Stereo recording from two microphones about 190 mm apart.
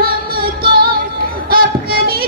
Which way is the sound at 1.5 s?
50° right (ahead or behind).